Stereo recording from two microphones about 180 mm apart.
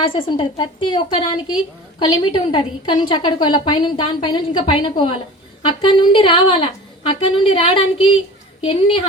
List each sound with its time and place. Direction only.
0.3 s a woman's voice: 25° left (ahead or behind)